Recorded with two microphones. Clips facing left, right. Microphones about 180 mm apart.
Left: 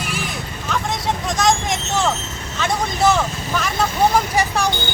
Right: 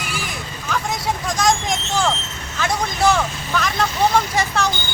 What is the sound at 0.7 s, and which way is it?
Vehicle, centre (ahead or behind).